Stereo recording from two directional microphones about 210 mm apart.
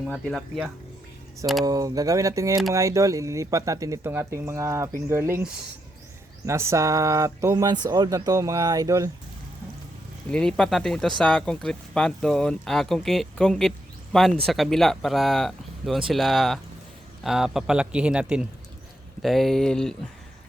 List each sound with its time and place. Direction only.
0.0 s speech: centre (ahead or behind)
1.6 s speech: 15° right (ahead or behind)
10.2 s speech: 5° left (ahead or behind)